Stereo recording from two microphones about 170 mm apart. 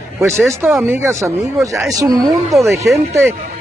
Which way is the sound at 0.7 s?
5° right (ahead or behind).